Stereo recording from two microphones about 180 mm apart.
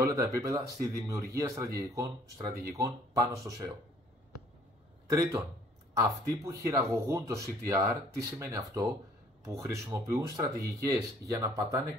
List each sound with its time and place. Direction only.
0.0 s speech: 15° right (ahead or behind)
5.0 s a man's voice: 15° right (ahead or behind)